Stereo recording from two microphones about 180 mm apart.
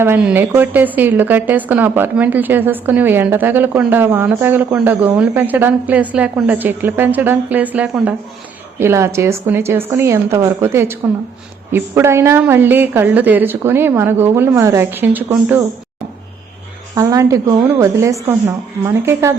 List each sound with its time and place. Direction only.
0.0 s a woman's voice: 10° right (ahead or behind)
16.9 s a woman's voice: 20° right (ahead or behind)